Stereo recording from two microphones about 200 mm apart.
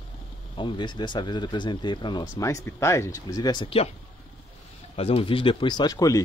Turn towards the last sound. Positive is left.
turn(degrees=15)  # may be behind; listen again after turning